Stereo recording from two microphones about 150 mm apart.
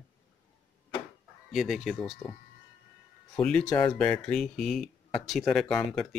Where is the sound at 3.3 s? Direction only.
5° left (ahead or behind).